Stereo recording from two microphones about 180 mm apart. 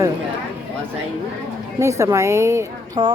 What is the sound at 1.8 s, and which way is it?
Speech, 15° right (ahead or behind).